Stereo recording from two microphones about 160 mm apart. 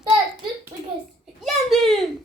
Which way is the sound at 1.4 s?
Centre (ahead or behind).